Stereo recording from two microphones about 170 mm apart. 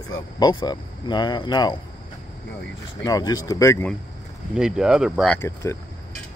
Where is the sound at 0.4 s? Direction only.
25° left (ahead or behind).